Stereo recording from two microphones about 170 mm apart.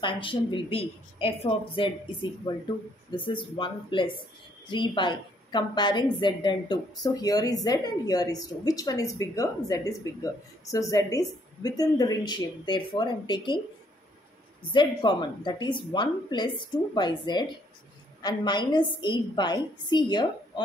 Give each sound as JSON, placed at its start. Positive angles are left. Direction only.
{"t": 0.0, "sound": "a woman's voice", "side_deg": 30}
{"t": 3.1, "sound": "a woman's voice", "side_deg": 30}
{"t": 14.7, "sound": "a woman's voice", "side_deg": 30}